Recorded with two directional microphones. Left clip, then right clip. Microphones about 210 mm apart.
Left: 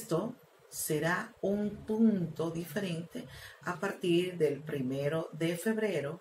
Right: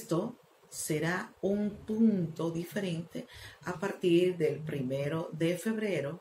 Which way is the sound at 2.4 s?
15° right (ahead or behind).